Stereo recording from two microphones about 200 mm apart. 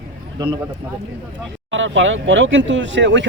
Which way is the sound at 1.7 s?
70° right (ahead or behind).